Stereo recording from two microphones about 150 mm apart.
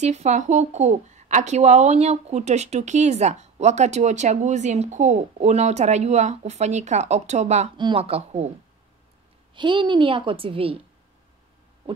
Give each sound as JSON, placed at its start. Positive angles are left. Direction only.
{"t": 0.0, "sound": "a woman's voice", "side_deg": -50}
{"t": 7.7, "sound": "a woman's voice", "side_deg": -35}
{"t": 9.6, "sound": "a woman's voice", "side_deg": -35}